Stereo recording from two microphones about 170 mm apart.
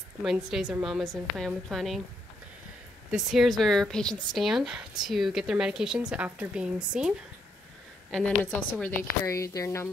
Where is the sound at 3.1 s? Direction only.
Centre (ahead or behind).